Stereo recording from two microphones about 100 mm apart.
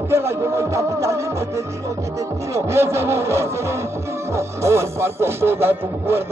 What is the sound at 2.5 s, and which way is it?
Speech, 25° right (ahead or behind).